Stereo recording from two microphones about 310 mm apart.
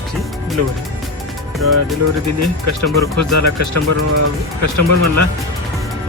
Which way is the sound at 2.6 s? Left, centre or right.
Right.